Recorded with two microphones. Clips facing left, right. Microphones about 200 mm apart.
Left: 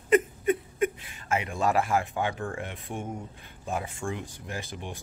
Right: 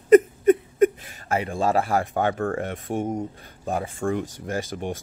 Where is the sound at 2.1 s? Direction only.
50° right (ahead or behind).